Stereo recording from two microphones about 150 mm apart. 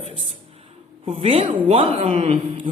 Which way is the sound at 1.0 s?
40° right (ahead or behind).